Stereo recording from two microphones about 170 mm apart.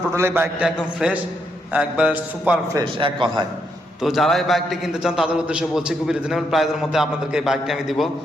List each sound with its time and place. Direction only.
0.1 s a man's voice: 15° right (ahead or behind)
2.7 s a man's voice: 30° right (ahead or behind)
4.0 s a man's voice: centre (ahead or behind)